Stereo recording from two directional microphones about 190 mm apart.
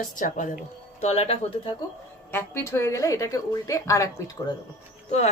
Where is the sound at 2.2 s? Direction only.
10° left (ahead or behind).